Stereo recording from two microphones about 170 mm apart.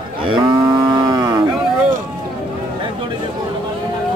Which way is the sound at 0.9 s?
25° right (ahead or behind).